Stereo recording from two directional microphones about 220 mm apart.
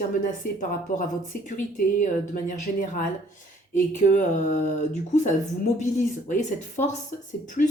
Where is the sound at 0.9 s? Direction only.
40° left (ahead or behind).